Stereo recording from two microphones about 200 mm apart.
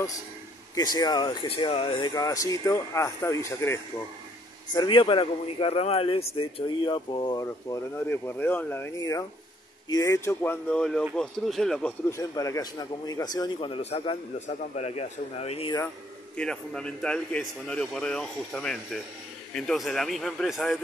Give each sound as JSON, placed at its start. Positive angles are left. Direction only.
{"t": 0.7, "sound": "speech", "side_deg": 20}
{"t": 4.7, "sound": "speech", "side_deg": 25}
{"t": 12.1, "sound": "speech", "side_deg": 15}
{"t": 16.3, "sound": "speech", "side_deg": 5}